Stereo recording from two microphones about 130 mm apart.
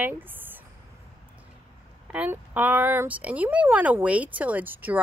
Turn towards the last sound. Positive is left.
turn(degrees=-15)  # may be behind; listen again after turning